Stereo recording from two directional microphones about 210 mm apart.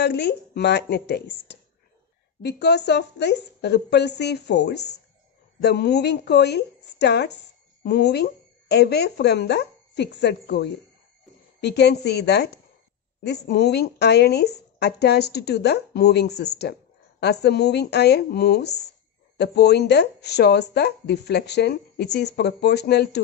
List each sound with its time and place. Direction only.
0.0 s speech: 55° left (ahead or behind)